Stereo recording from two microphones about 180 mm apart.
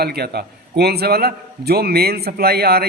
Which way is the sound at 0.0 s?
60° right (ahead or behind).